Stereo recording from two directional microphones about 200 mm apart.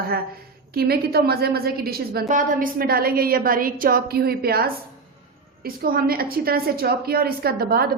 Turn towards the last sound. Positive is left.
turn(degrees=-50)  # may be behind; listen again after turning